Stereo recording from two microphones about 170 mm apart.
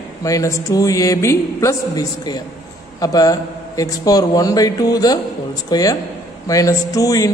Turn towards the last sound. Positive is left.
turn(degrees=20)  # may be behind; listen again after turning